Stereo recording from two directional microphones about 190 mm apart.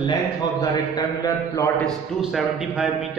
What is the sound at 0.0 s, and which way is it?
A man's voice, 20° left (ahead or behind).